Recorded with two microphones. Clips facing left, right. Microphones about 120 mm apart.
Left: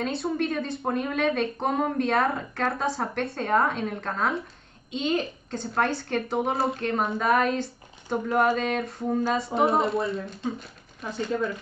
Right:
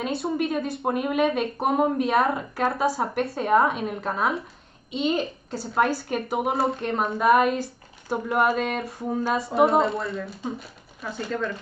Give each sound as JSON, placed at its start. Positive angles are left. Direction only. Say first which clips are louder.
{"t": 0.0, "sound": "a woman's voice", "louder": "right 1 dB", "side_deg": 0}